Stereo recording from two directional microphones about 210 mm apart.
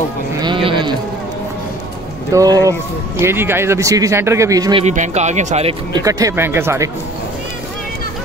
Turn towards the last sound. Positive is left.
turn(degrees=-10)  # may be behind; listen again after turning